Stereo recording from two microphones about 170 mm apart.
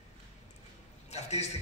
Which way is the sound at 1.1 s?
40° left (ahead or behind).